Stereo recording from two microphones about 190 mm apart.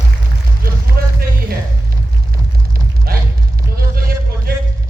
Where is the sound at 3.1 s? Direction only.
50° right (ahead or behind).